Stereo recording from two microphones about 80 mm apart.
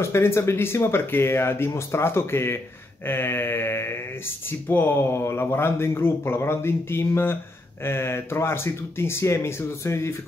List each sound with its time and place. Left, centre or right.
0.0 s speech: left
3.1 s a sound: left
4.5 s speech: left